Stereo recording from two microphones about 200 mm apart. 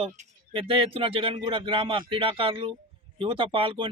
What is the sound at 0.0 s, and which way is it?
A man's voice, 25° right (ahead or behind).